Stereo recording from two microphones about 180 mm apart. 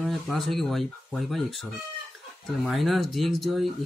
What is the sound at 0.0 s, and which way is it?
Speech, centre (ahead or behind).